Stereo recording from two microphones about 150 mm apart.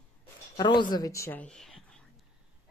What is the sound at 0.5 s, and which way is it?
Speech, 30° left (ahead or behind).